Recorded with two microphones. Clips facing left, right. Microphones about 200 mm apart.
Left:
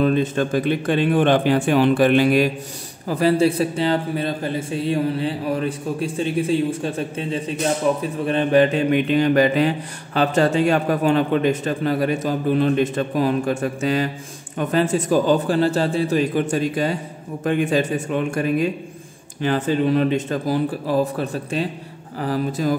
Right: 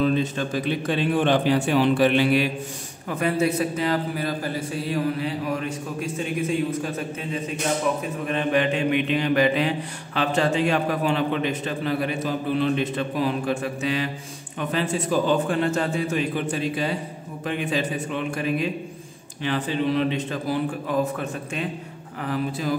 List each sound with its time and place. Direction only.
0.0 s a man's voice: 50° left (ahead or behind)
3.1 s a man's voice: 30° left (ahead or behind)